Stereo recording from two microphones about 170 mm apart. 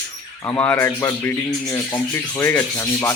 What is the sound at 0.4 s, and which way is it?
Speech, 10° left (ahead or behind).